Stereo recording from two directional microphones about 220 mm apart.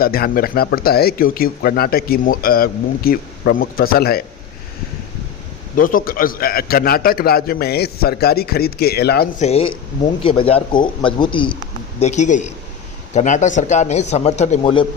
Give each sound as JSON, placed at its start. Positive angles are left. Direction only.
{"t": 0.0, "sound": "speech", "side_deg": 45}
{"t": 5.7, "sound": "speech", "side_deg": 40}
{"t": 9.4, "sound": "speech", "side_deg": 30}
{"t": 11.9, "sound": "a man's voice", "side_deg": 30}